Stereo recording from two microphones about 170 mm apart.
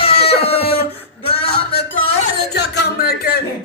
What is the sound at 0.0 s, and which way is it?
Chicken, 35° left (ahead or behind).